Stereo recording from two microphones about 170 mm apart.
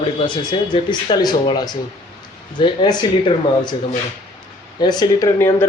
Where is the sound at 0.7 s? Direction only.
25° left (ahead or behind).